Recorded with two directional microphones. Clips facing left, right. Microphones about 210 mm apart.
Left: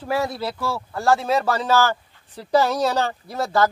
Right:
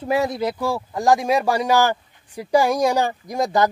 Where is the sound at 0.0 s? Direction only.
20° right (ahead or behind).